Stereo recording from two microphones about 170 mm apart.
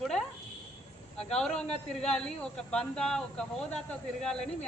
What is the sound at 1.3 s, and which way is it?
Speech, 5° left (ahead or behind).